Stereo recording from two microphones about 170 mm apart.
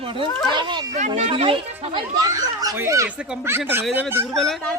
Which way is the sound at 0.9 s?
45° right (ahead or behind).